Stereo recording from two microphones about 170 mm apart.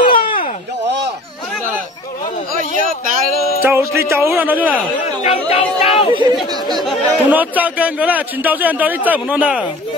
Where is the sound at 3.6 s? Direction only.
15° right (ahead or behind).